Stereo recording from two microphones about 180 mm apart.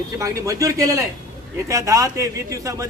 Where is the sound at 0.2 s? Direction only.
15° right (ahead or behind).